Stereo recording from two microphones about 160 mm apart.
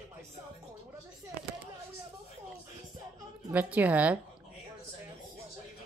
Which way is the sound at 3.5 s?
10° right (ahead or behind).